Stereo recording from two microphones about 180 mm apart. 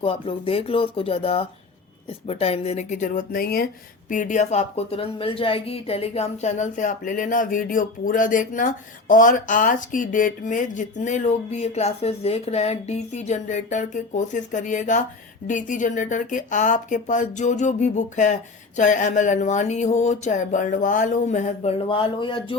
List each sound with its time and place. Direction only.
0.0 s a woman's voice: 30° left (ahead or behind); by 3.7 s 55° left (ahead or behind)
4.1 s a woman's voice: 45° left (ahead or behind); by 22.5 s 30° left (ahead or behind)